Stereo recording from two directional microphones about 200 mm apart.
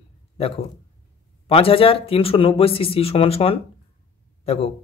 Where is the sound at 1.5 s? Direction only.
25° left (ahead or behind).